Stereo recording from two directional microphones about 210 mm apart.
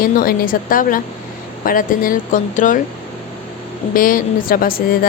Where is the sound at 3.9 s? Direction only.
40° left (ahead or behind).